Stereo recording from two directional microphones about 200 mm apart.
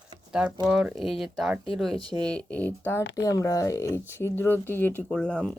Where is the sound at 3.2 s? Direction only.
15° left (ahead or behind).